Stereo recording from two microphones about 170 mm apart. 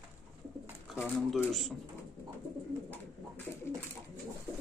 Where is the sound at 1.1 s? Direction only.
Centre (ahead or behind).